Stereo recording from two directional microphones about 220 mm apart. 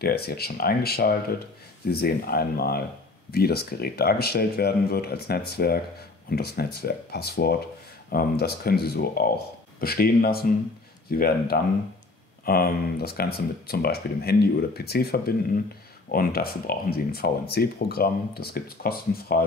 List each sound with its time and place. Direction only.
0.0 s speech: 45° left (ahead or behind)